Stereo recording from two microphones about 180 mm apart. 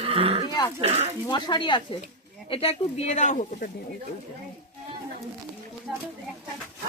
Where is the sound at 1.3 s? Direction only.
25° left (ahead or behind); by 3.7 s 40° left (ahead or behind).